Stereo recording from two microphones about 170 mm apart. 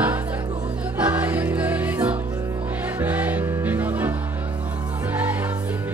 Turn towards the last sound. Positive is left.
turn(degrees=-10)  # may be behind; listen again after turning